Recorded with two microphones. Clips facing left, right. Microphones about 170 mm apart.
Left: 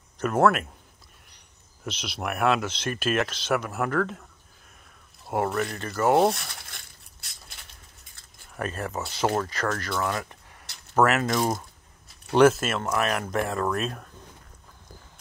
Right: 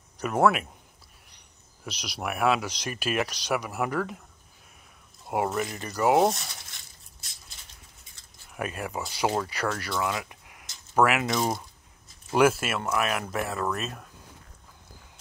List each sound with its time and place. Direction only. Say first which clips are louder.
0.2 s speech: left 2 dB; 10° right (ahead or behind)
1.9 s speech: left 2 dB; 10° right (ahead or behind)
5.3 s speech: left 1 dB; 10° right (ahead or behind)
6.4 s crushing: left 2 dB; 60° left (ahead or behind)
8.5 s speech: left 1 dB; 10° right (ahead or behind)
11.3 s speech: left 2 dB; centre (ahead or behind)